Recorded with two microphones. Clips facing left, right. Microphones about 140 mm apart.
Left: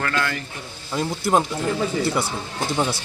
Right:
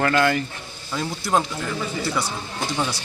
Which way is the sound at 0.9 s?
15° left (ahead or behind).